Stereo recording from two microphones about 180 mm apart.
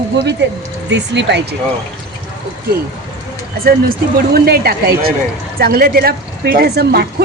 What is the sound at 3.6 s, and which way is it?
Speech, 55° right (ahead or behind).